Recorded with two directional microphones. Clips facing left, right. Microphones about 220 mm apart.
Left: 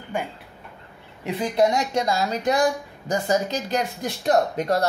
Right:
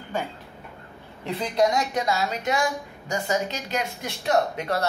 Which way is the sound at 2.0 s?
35° left (ahead or behind).